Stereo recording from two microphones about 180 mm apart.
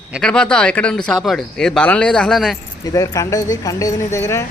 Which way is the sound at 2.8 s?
20° left (ahead or behind).